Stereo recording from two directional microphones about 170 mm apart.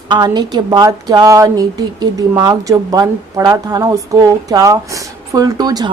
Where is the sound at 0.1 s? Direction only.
25° right (ahead or behind).